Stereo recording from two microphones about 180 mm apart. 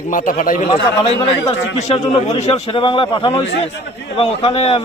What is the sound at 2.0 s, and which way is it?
A man's voice, 30° left (ahead or behind).